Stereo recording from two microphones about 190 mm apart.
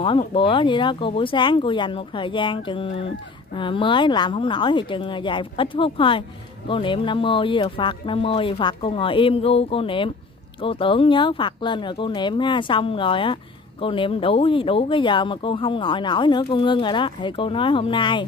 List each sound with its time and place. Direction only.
0.0 s speech: 25° left (ahead or behind)